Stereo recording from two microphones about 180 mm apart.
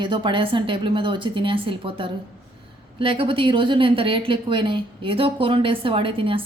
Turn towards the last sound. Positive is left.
turn(degrees=-30)  # may be behind; listen again after turning